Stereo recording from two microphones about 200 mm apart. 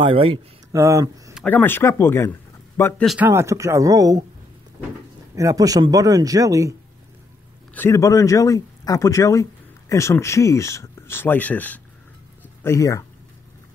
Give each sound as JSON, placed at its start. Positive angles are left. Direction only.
{"t": 0.0, "sound": "speech", "side_deg": -25}
{"t": 0.7, "sound": "speech", "side_deg": -15}
{"t": 1.3, "sound": "speech", "side_deg": 5}
{"t": 3.2, "sound": "speech", "side_deg": -10}
{"t": 5.3, "sound": "speech", "side_deg": -15}
{"t": 7.7, "sound": "speech", "side_deg": 15}